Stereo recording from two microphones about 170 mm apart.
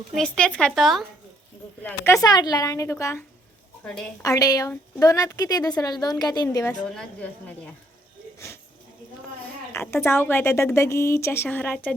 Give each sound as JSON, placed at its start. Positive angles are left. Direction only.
{"t": 0.2, "sound": "a woman's voice", "side_deg": 5}
{"t": 2.2, "sound": "a woman's voice", "side_deg": 25}
{"t": 6.9, "sound": "a woman's voice", "side_deg": 5}
{"t": 9.7, "sound": "a woman's voice", "side_deg": 15}